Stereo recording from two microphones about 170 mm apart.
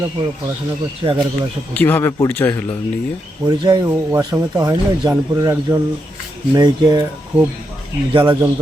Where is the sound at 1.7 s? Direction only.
10° left (ahead or behind).